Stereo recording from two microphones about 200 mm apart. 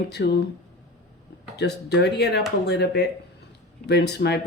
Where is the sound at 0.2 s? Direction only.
55° left (ahead or behind).